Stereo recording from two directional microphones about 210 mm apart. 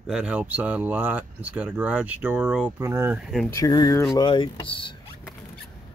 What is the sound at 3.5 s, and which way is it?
Speech, 15° left (ahead or behind).